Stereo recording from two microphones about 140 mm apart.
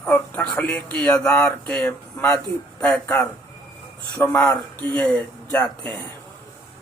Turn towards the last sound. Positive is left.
turn(degrees=10)  # may be behind; listen again after turning